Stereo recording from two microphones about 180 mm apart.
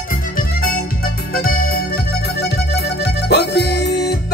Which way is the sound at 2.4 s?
70° left (ahead or behind).